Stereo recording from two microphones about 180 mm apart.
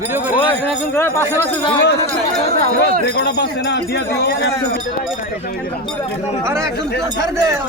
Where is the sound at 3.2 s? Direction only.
65° left (ahead or behind).